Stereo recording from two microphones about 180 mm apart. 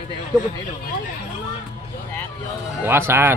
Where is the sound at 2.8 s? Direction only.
15° right (ahead or behind).